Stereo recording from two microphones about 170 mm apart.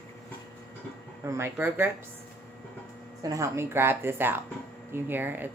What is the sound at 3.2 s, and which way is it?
A woman's voice, 20° right (ahead or behind).